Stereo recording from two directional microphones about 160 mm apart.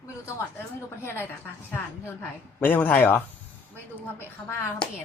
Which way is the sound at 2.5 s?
10° left (ahead or behind).